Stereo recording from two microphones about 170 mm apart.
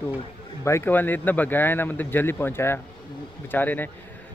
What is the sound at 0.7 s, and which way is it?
Speech, 15° left (ahead or behind).